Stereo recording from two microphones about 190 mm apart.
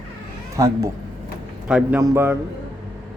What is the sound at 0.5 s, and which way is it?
Speech, 15° right (ahead or behind).